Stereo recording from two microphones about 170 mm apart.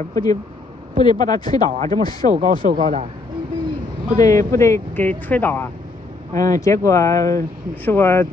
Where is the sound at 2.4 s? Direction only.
55° right (ahead or behind).